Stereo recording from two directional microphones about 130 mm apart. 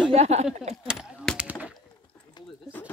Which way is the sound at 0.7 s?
5° right (ahead or behind).